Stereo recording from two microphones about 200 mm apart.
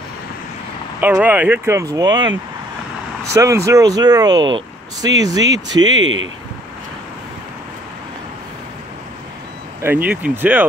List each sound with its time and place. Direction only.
1.0 s speech: 10° right (ahead or behind)
3.3 s speech: 15° right (ahead or behind)
5.9 s speech: 70° right (ahead or behind)
9.8 s speech: 10° right (ahead or behind)